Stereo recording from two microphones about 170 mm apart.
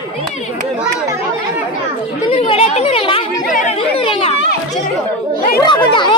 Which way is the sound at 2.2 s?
35° left (ahead or behind).